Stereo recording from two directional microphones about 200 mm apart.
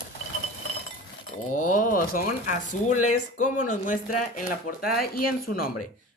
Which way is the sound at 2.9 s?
90° left.